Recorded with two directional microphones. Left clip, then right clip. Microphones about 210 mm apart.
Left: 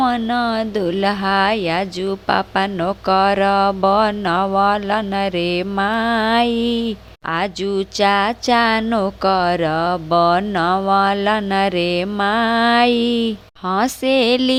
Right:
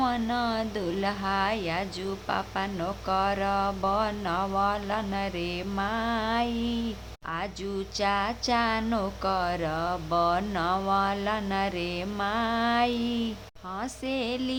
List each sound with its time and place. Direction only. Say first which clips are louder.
0.0 s speech: left 10 dB; 35° left (ahead or behind)